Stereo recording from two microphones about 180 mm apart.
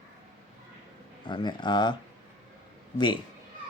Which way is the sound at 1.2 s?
25° left (ahead or behind).